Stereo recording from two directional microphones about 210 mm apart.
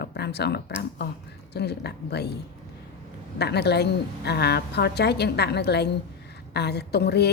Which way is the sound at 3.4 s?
50° left (ahead or behind).